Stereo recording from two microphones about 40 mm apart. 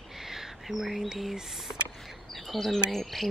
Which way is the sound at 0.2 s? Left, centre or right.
Centre.